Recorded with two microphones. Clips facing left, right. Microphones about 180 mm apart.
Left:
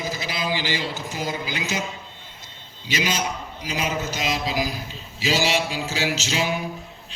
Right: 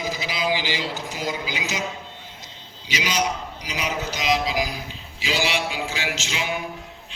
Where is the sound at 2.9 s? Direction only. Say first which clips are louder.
Even; 45° left (ahead or behind).